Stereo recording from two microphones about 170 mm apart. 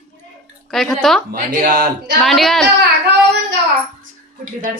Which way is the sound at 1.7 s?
70° right (ahead or behind).